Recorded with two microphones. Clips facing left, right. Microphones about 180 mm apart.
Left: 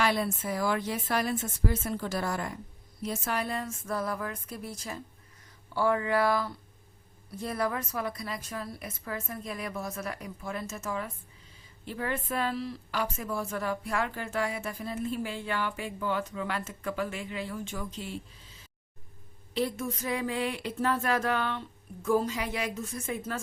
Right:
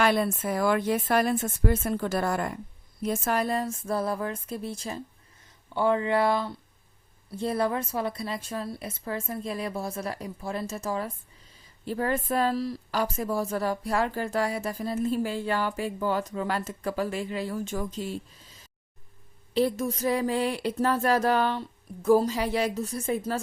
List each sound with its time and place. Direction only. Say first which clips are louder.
0.0 s a woman's voice: right 4 dB; 55° right (ahead or behind)
19.5 s a woman's voice: right 6 dB; 35° right (ahead or behind)